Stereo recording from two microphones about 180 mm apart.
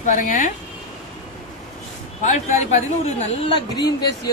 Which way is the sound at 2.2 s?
40° left (ahead or behind).